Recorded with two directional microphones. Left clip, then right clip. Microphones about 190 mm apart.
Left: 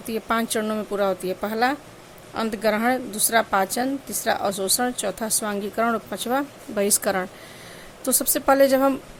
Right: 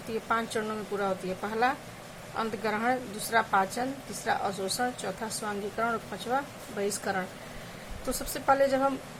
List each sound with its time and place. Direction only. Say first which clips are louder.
0.1 s speech: left 6 dB; 55° left (ahead or behind)